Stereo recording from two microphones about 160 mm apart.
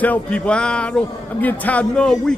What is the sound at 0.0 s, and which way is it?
A man's voice, 10° left (ahead or behind).